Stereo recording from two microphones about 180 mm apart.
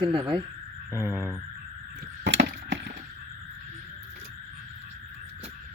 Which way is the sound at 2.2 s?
80° right.